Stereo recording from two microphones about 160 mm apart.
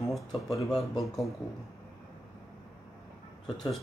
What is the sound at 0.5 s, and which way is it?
Speech, 30° left (ahead or behind).